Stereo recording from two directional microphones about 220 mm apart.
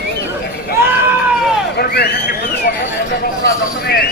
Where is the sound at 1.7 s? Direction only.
45° left (ahead or behind).